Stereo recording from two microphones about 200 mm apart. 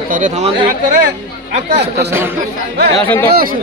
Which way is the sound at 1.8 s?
55° right (ahead or behind).